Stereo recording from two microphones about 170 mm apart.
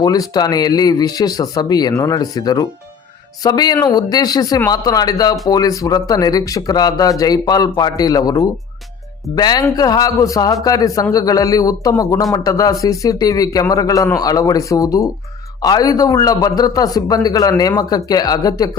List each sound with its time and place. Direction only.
0.0 s a man's voice: 25° left (ahead or behind)